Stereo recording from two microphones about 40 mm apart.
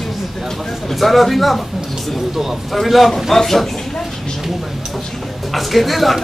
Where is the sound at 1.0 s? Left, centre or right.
Centre.